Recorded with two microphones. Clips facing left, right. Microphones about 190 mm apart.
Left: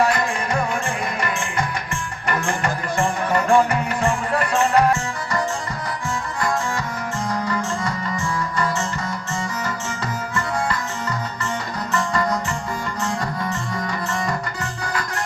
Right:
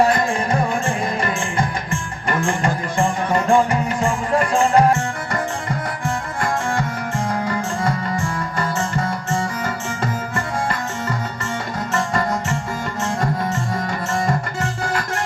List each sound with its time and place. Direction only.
0.0 s music: 30° right (ahead or behind)
6.4 s music: 50° right (ahead or behind)
11.9 s music: 45° right (ahead or behind)